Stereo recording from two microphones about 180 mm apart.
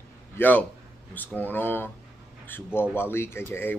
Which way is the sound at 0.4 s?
10° left (ahead or behind).